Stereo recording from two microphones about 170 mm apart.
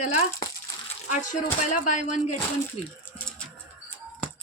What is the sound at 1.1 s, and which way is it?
Speech, 45° left (ahead or behind).